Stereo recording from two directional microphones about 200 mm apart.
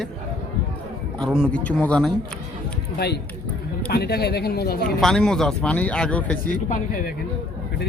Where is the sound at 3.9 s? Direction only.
50° left (ahead or behind).